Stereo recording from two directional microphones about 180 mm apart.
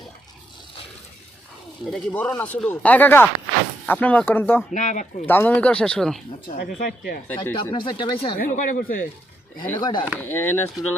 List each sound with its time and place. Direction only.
1.9 s speech: 5° left (ahead or behind)
4.7 s speech: 45° left (ahead or behind)
5.2 s speech: 10° left (ahead or behind)
6.5 s speech: 55° left (ahead or behind)
7.5 s speech: 30° left (ahead or behind)
8.4 s speech: 45° left (ahead or behind)
9.7 s speech: 25° left (ahead or behind)
10.2 s speech: 10° left (ahead or behind)